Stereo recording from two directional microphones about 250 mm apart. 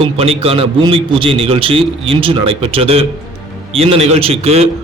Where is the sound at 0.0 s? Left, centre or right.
Right.